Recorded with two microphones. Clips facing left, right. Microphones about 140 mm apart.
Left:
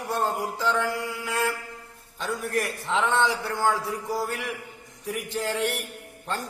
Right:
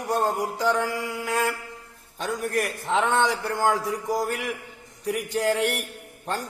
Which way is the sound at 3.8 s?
15° right (ahead or behind).